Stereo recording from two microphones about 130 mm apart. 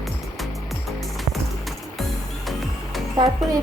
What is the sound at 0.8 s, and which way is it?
Music, centre (ahead or behind).